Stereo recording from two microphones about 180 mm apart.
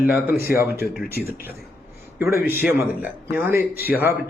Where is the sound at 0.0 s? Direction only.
10° right (ahead or behind).